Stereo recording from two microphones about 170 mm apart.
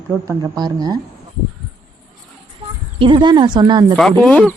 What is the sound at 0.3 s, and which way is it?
Speech, 20° right (ahead or behind).